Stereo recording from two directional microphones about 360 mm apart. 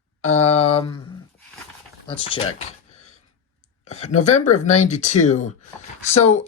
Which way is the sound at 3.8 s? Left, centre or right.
Centre.